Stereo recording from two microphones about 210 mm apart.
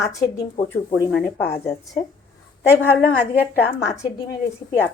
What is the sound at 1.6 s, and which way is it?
Speech, 15° left (ahead or behind).